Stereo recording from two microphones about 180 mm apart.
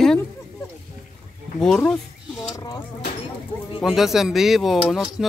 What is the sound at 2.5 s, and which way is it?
Vehicle, 20° left (ahead or behind).